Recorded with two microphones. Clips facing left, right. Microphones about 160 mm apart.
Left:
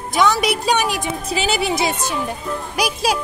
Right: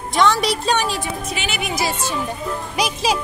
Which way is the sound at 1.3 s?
35° left (ahead or behind).